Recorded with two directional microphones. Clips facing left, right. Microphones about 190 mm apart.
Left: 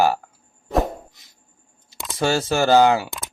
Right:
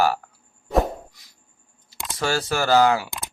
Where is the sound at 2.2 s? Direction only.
25° left (ahead or behind).